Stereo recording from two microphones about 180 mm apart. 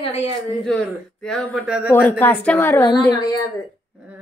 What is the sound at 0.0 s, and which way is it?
Speech, 35° left (ahead or behind).